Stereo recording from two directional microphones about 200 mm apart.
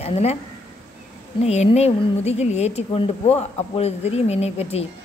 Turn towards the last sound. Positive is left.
turn(degrees=30)  # may be behind; listen again after turning